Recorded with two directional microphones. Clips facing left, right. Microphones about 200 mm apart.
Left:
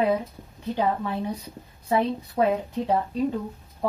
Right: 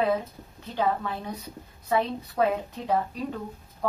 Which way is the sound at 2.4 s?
10° left (ahead or behind).